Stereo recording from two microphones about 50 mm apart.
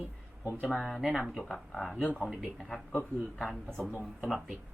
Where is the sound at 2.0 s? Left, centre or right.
Left.